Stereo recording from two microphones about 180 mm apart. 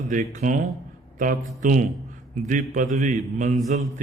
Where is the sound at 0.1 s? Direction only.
45° right (ahead or behind).